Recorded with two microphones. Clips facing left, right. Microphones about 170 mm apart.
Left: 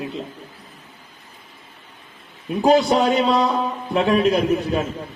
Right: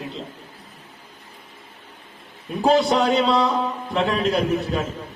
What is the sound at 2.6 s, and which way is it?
Speech, 20° left (ahead or behind).